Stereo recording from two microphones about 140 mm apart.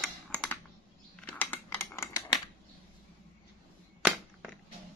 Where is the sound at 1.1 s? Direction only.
10° left (ahead or behind).